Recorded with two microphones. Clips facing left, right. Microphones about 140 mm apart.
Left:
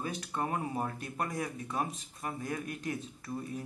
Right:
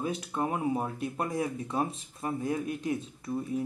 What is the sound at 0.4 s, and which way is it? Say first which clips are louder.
Speech: right 4 dB; 15° right (ahead or behind).